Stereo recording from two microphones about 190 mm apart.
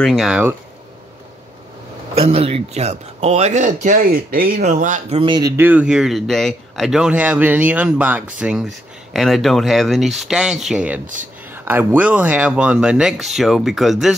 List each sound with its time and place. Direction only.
0.0 s speech: centre (ahead or behind)
2.1 s speech: 30° right (ahead or behind)
5.2 s speech: 25° right (ahead or behind)
5.6 s speech: 10° right (ahead or behind)